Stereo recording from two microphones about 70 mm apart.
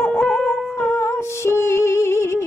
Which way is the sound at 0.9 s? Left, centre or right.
Left.